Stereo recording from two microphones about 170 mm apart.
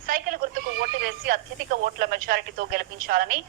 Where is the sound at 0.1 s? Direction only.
55° right (ahead or behind).